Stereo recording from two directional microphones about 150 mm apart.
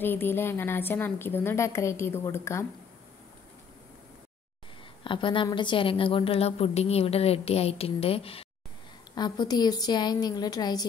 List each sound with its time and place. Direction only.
0.0 s a woman's voice: 15° left (ahead or behind)
5.0 s a woman's voice: 35° left (ahead or behind)
9.1 s a woman's voice: 30° left (ahead or behind)